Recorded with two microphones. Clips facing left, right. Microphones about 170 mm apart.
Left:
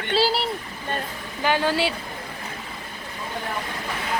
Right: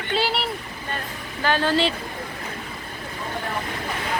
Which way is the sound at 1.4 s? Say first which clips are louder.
Right 1 dB; 15° left (ahead or behind).